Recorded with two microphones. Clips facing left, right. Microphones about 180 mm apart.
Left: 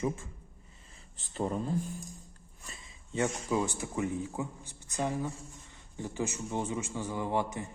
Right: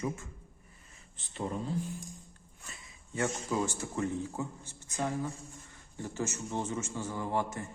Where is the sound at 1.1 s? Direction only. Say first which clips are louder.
Left 3 dB; 40° left (ahead or behind).